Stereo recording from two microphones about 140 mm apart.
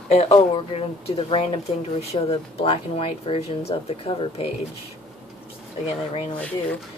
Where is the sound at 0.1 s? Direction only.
45° left (ahead or behind).